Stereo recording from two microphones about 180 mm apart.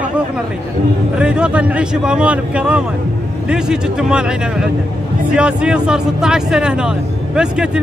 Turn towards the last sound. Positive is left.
turn(degrees=-5)  # may be behind; listen again after turning